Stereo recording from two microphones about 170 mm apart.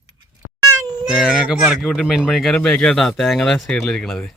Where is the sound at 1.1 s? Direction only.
5° right (ahead or behind).